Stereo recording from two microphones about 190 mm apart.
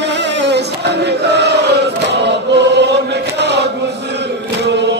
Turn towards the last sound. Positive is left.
turn(degrees=-65)  # may be behind; listen again after turning